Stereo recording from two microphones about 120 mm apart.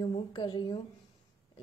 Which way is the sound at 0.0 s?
40° left (ahead or behind).